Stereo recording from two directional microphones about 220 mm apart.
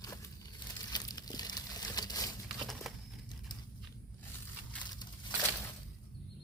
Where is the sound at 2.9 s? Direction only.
Centre (ahead or behind).